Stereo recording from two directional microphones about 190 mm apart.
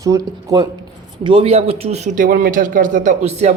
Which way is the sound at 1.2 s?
30° right (ahead or behind).